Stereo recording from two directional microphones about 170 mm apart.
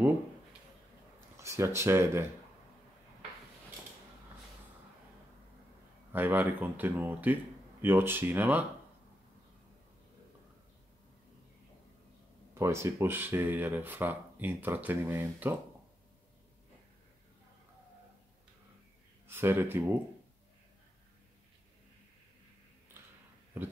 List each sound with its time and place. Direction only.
1.3 s speech: 15° right (ahead or behind)
6.1 s speech: 10° right (ahead or behind)
12.5 s speech: 15° right (ahead or behind)
19.2 s speech: 10° right (ahead or behind)